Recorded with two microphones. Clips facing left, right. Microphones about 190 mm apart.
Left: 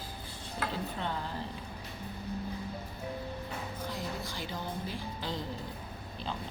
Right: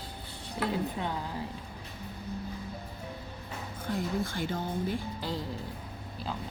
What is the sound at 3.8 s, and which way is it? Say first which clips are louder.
Music: right 10 dB; 55° right (ahead or behind).